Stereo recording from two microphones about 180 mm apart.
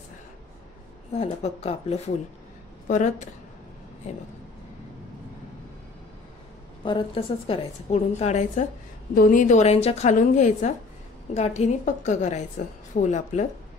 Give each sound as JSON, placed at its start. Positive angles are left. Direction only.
{"t": 1.1, "sound": "a woman's voice", "side_deg": 35}
{"t": 6.8, "sound": "a woman's voice", "side_deg": 30}
{"t": 9.1, "sound": "a woman's voice", "side_deg": 50}